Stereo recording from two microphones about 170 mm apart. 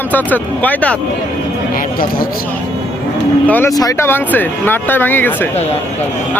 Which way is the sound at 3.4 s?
10° left (ahead or behind).